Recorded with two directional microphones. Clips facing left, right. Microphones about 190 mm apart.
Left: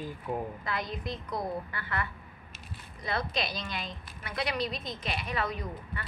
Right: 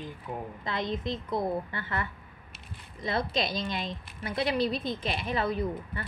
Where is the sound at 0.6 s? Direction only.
25° right (ahead or behind).